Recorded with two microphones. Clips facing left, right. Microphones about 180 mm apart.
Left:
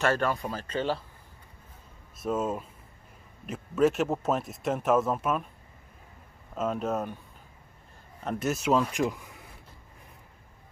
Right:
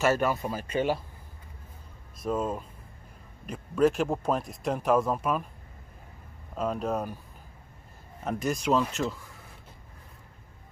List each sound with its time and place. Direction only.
0.0 s speech: 5° right (ahead or behind)
2.2 s speech: 5° left (ahead or behind)
6.5 s speech: centre (ahead or behind)
8.2 s speech: centre (ahead or behind)
9.0 s speech: 20° left (ahead or behind)